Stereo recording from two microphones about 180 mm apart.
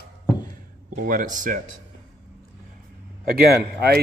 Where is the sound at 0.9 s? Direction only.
50° right (ahead or behind).